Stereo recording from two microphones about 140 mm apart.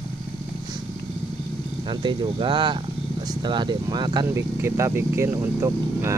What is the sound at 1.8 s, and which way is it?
Speech, 35° right (ahead or behind).